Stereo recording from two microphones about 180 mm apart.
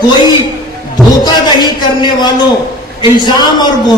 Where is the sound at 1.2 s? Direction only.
25° left (ahead or behind).